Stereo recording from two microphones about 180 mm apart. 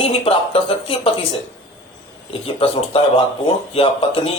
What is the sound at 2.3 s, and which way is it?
Speech, 30° left (ahead or behind).